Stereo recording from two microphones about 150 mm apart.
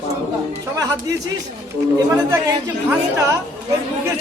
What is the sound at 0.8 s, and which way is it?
Speech, 25° right (ahead or behind).